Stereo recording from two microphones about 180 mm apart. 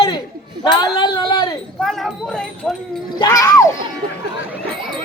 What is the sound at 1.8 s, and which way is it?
Speech, centre (ahead or behind).